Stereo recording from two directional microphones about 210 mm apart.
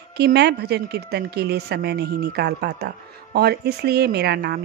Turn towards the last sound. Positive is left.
turn(degrees=-50)  # may be behind; listen again after turning